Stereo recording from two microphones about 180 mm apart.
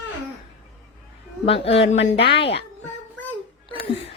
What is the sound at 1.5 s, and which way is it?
A woman's voice, 35° left (ahead or behind).